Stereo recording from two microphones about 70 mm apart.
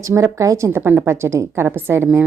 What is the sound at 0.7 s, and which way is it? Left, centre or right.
Speech, right.